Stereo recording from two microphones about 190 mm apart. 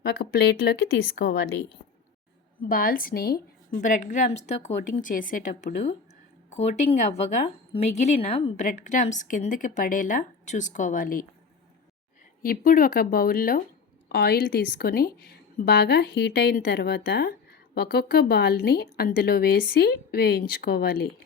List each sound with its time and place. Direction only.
0.0 s a woman's voice: 55° left (ahead or behind)
12.4 s a woman's voice: 50° left (ahead or behind)